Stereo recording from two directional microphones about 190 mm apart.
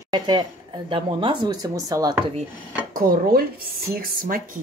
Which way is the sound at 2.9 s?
50° right (ahead or behind).